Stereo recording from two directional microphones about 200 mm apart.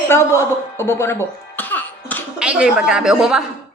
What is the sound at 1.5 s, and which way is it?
Cough, 10° left (ahead or behind).